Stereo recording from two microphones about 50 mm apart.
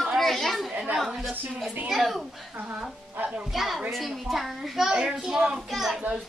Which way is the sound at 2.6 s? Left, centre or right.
Right.